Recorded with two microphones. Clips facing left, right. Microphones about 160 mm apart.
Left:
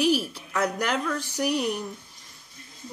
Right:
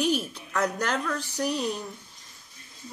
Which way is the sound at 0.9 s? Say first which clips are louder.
Left 2 dB; 15° left (ahead or behind).